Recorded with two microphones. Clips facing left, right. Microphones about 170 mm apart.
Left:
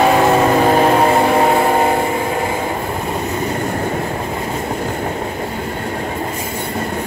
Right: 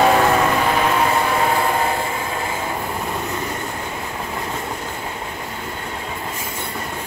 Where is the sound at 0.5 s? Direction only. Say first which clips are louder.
Left 7 dB; 40° left (ahead or behind).